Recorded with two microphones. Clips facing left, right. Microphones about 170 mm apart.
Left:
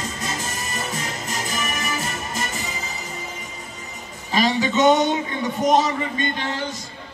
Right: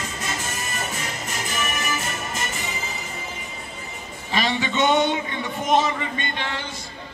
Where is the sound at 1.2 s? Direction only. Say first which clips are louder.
Even; 35° left (ahead or behind).